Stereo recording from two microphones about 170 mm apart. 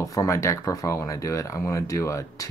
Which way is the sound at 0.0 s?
20° left (ahead or behind).